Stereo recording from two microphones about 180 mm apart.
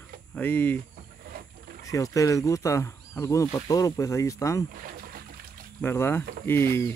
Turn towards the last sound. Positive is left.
turn(degrees=15)  # may be behind; listen again after turning